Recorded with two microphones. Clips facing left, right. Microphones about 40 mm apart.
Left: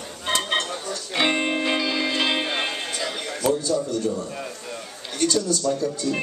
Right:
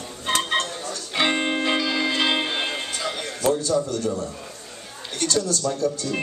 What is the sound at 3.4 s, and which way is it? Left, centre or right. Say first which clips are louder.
Speech: right 1 dB; right.